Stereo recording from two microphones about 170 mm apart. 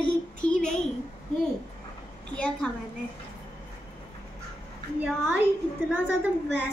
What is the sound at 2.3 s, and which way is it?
Speech, 5° left (ahead or behind).